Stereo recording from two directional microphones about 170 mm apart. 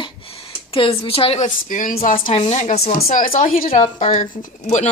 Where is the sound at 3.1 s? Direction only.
50° left (ahead or behind).